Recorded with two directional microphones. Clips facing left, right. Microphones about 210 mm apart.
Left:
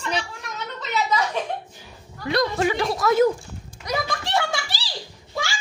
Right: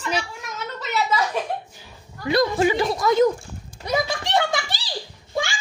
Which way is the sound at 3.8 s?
20° right (ahead or behind).